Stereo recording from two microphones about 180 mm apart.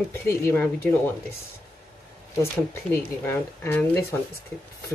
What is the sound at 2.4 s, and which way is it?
Speech, 15° left (ahead or behind).